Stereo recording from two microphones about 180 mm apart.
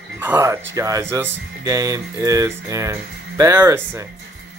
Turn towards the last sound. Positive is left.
turn(degrees=-15)  # may be behind; listen again after turning